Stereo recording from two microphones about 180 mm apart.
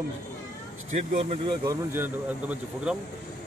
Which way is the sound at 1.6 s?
10° right (ahead or behind).